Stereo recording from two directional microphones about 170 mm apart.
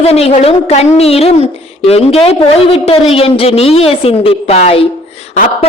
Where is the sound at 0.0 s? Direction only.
35° left (ahead or behind).